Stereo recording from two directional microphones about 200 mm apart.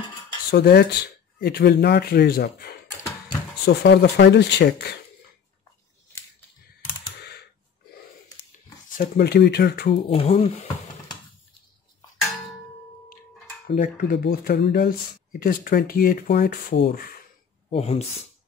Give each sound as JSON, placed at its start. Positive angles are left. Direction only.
{"t": 0.5, "sound": "speech", "side_deg": 55}
{"t": 3.6, "sound": "speech", "side_deg": 60}
{"t": 7.2, "sound": "computer keyboard", "side_deg": 55}
{"t": 8.9, "sound": "speech", "side_deg": 50}
{"t": 10.0, "sound": "speech", "side_deg": 30}
{"t": 13.7, "sound": "speech", "side_deg": 45}
{"t": 17.6, "sound": "speech", "side_deg": 30}